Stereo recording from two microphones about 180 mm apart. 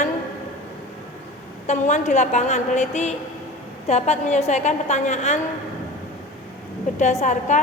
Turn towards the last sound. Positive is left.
turn(degrees=40)  # may be behind; listen again after turning